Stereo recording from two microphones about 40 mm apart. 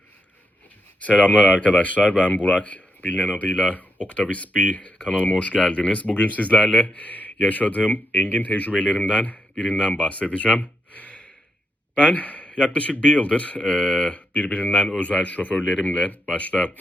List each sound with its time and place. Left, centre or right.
1.0 s speech: left
4.9 s speech: left
6.6 s speech: left
6.8 s speech: left
10.6 s gasp: left
12.1 s a man's voice: left
13.6 s speech: centre
14.1 s speech: left
15.8 s speech: left